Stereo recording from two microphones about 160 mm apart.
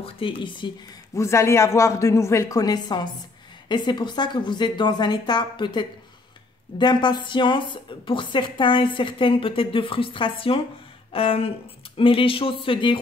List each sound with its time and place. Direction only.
0.0 s a woman's voice: 35° left (ahead or behind)
1.1 s a woman's voice: 15° left (ahead or behind)